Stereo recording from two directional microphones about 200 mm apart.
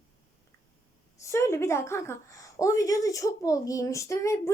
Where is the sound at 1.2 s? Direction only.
15° left (ahead or behind).